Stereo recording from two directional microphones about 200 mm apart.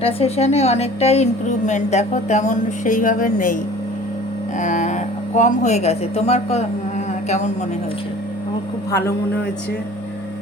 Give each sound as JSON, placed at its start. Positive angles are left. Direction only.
{"t": 0.0, "sound": "a woman's voice", "side_deg": 30}
{"t": 4.6, "sound": "a woman's voice", "side_deg": 40}
{"t": 8.9, "sound": "a man's voice", "side_deg": 15}